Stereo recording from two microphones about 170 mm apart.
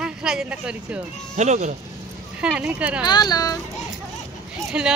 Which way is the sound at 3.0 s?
25° left (ahead or behind).